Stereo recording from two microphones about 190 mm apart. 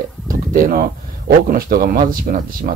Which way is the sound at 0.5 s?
45° right (ahead or behind).